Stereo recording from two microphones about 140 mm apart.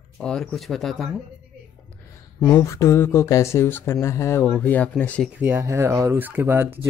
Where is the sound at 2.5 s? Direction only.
20° left (ahead or behind).